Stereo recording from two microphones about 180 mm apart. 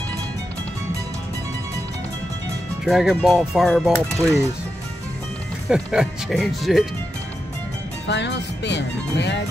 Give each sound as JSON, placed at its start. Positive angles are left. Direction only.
{"t": 2.8, "sound": "speech", "side_deg": 0}
{"t": 4.1, "sound": "speech", "side_deg": -15}
{"t": 5.7, "sound": "speech", "side_deg": -5}
{"t": 8.1, "sound": "speech", "side_deg": 75}